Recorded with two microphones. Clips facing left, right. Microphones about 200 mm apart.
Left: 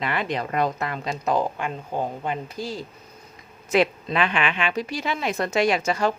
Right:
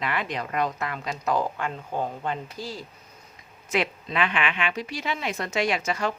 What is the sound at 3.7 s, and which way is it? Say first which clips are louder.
A woman's voice: left 6 dB; 35° left (ahead or behind).